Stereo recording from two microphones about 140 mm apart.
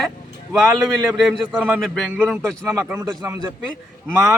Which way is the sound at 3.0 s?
20° right (ahead or behind).